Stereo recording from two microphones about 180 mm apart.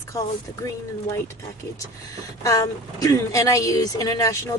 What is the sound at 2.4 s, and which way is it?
A woman's voice, 20° left (ahead or behind).